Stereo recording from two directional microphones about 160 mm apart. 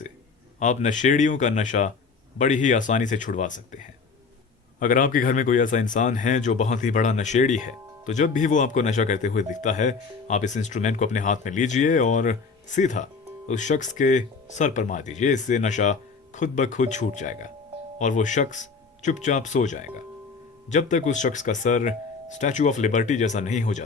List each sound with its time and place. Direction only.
0.6 s speech: 50° left (ahead or behind)